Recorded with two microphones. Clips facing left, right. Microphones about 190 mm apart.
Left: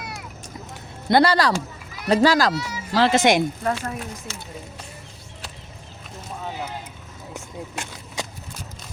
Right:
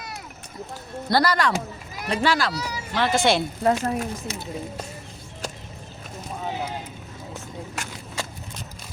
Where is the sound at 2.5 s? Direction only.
35° right (ahead or behind).